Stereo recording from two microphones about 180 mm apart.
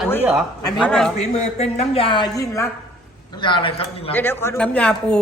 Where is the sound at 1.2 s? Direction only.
40° left (ahead or behind).